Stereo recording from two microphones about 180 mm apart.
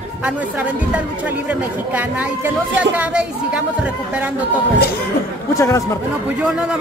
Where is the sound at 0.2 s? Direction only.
5° right (ahead or behind).